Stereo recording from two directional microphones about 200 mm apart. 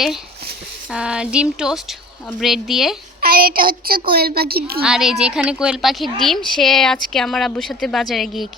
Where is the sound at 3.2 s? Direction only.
45° right (ahead or behind).